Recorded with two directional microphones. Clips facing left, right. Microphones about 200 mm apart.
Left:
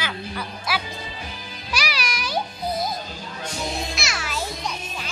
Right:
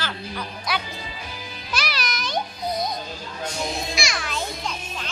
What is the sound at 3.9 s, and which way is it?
Music, 5° left (ahead or behind).